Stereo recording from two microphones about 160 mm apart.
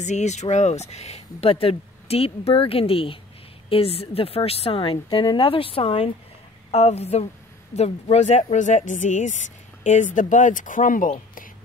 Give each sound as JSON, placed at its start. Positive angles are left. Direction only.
{"t": 0.0, "sound": "speech", "side_deg": 45}